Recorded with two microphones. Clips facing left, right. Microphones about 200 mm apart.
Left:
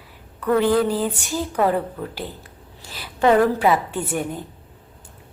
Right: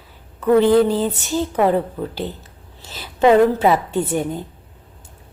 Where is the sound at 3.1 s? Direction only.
20° right (ahead or behind).